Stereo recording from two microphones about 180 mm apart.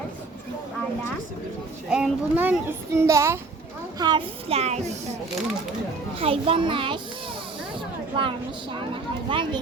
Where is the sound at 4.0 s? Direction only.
25° right (ahead or behind).